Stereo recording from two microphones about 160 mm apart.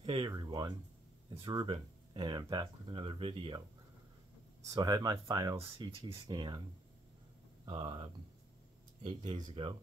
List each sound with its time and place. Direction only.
0.0 s speech: 30° right (ahead or behind)
4.6 s speech: 25° right (ahead or behind)
7.6 s speech: 35° right (ahead or behind)